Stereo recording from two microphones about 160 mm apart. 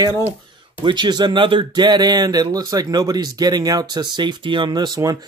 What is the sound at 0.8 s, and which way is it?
Speech, 25° right (ahead or behind).